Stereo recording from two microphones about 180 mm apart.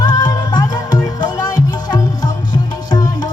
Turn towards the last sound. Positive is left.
turn(degrees=20)  # may be behind; listen again after turning